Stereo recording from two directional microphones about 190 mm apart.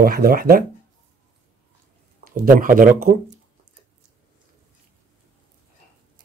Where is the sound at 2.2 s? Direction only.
45° right (ahead or behind).